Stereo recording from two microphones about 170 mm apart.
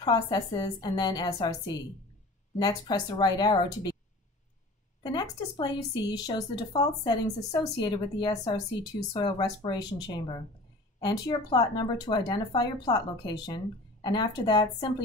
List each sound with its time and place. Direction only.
0.0 s a woman's voice: 25° left (ahead or behind)
5.0 s a woman's voice: 25° left (ahead or behind)